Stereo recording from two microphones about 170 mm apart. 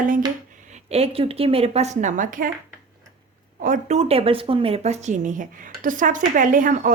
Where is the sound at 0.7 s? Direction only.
35° right (ahead or behind).